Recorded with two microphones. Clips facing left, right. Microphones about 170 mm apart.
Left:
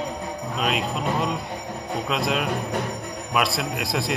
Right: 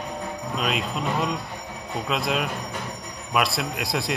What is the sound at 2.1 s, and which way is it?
Speech, centre (ahead or behind).